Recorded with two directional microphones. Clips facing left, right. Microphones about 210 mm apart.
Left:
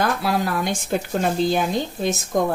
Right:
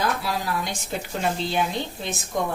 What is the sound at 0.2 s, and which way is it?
Speech, 55° left (ahead or behind).